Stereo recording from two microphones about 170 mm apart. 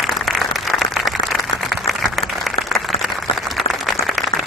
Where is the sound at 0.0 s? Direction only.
Centre (ahead or behind).